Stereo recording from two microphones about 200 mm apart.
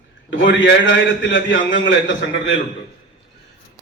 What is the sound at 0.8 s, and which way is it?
A man's voice, 65° left (ahead or behind).